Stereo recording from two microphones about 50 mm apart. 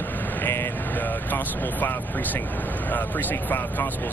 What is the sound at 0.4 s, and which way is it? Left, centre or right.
Vehicle, left.